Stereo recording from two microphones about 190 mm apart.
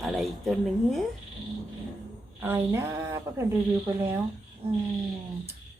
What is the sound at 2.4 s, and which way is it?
Speech, 10° right (ahead or behind).